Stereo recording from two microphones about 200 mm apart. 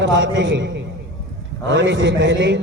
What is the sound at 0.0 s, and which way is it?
Speech, 65° right (ahead or behind).